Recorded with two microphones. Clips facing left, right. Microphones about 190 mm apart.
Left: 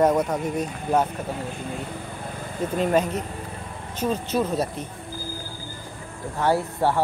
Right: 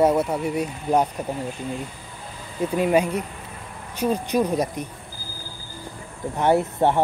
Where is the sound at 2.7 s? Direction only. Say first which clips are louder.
Right 2 dB; 10° right (ahead or behind).